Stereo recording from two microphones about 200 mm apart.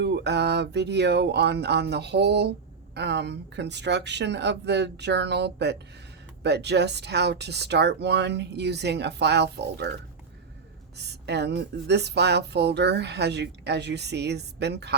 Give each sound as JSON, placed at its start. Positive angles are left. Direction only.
{"t": 0.0, "sound": "speech", "side_deg": -55}